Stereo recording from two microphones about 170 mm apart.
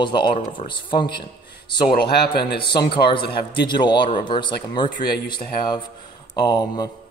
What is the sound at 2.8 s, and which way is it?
A man's voice, 30° left (ahead or behind).